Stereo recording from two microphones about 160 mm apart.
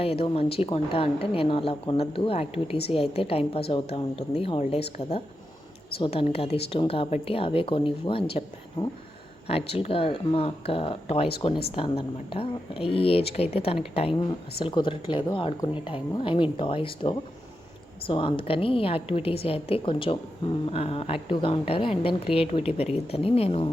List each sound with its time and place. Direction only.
0.0 s a woman's voice: 35° left (ahead or behind)
6.0 s a woman's voice: 35° left (ahead or behind)
9.5 s a woman's voice: 40° left (ahead or behind)